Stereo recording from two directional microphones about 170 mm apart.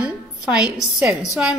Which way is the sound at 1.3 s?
5° right (ahead or behind).